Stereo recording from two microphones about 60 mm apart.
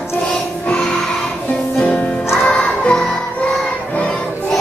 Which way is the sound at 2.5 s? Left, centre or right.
Centre.